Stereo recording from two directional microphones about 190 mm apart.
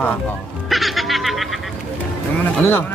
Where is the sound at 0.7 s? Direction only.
Centre (ahead or behind).